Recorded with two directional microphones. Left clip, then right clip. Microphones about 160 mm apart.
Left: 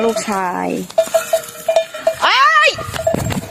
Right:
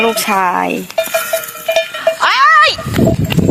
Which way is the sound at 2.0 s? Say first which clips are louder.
Right 2 dB; 15° left (ahead or behind).